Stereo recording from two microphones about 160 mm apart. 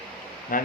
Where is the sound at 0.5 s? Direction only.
55° left (ahead or behind).